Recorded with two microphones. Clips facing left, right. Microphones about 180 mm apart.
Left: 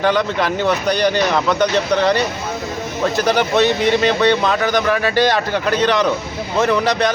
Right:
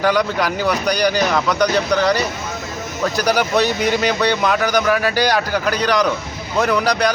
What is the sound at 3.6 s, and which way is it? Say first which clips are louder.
Speech: left 3 dB; centre (ahead or behind).